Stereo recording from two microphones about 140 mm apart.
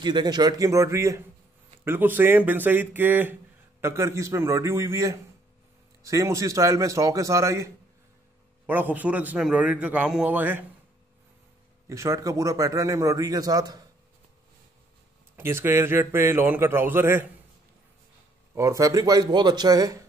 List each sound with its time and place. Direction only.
0.0 s a man's voice: 30° right (ahead or behind); by 10.6 s 10° right (ahead or behind)
11.9 s a man's voice: 20° right (ahead or behind)
15.3 s a man's voice: 15° right (ahead or behind)
18.5 s a man's voice: 20° right (ahead or behind)